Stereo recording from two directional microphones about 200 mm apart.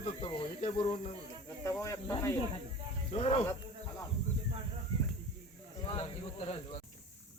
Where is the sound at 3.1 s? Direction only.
30° left (ahead or behind).